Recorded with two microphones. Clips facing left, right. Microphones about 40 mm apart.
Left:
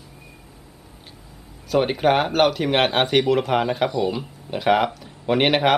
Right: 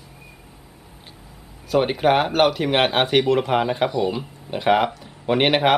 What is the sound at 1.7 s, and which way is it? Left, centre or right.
Speech, centre.